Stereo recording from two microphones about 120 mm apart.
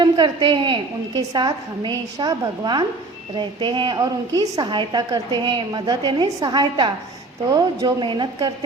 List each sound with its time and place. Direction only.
0.0 s a woman's voice: 40° right (ahead or behind)
8.0 s a woman's voice: 40° right (ahead or behind)